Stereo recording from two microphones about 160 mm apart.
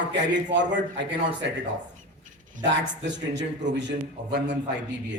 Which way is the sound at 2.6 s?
55° right (ahead or behind).